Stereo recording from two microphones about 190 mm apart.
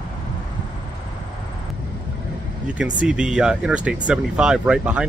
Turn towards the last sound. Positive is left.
turn(degrees=-5)  # may be behind; listen again after turning